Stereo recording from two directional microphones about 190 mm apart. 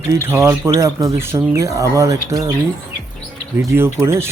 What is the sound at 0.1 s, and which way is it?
Speech, 15° right (ahead or behind).